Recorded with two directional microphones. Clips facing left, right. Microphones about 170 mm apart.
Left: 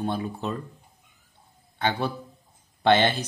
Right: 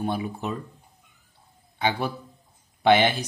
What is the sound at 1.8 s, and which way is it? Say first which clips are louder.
Speech: even; 10° right (ahead or behind).